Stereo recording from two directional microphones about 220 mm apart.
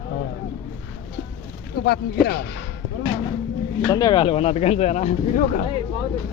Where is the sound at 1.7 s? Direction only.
45° left (ahead or behind).